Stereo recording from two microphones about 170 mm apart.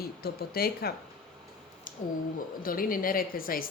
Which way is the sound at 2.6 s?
55° left (ahead or behind).